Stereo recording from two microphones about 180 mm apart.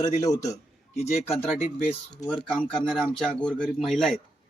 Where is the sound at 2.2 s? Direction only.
5° left (ahead or behind).